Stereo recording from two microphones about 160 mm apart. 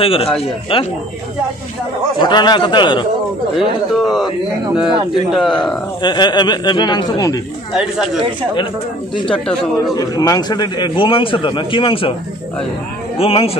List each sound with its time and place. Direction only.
0.0 s a man's voice: 35° left (ahead or behind)
2.1 s speech: 30° left (ahead or behind)
3.5 s a man's voice: centre (ahead or behind)
6.0 s speech: 25° left (ahead or behind)
7.7 s a man's voice: 5° right (ahead or behind)
9.3 s a man's voice: 5° left (ahead or behind)
9.9 s a man's voice: 25° left (ahead or behind)
13.2 s a man's voice: 35° left (ahead or behind)